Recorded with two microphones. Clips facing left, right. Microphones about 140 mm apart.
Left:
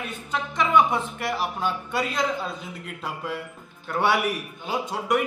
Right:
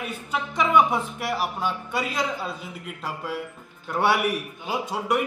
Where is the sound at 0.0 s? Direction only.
10° right (ahead or behind).